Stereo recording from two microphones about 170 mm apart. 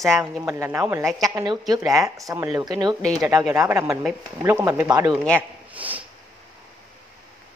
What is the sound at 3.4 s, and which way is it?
Speech, 5° right (ahead or behind).